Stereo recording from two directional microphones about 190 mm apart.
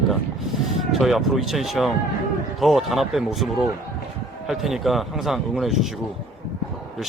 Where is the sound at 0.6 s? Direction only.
Centre (ahead or behind).